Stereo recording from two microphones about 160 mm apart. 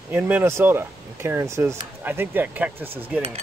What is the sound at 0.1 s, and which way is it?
Speech, 10° right (ahead or behind).